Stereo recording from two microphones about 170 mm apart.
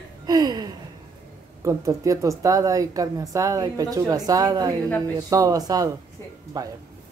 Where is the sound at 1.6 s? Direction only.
20° right (ahead or behind).